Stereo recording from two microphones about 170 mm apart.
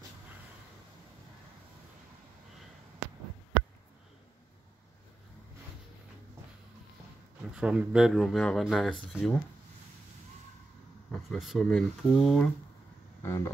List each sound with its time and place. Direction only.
7.5 s speech: 5° right (ahead or behind)
11.1 s speech: centre (ahead or behind)
13.2 s speech: 15° left (ahead or behind)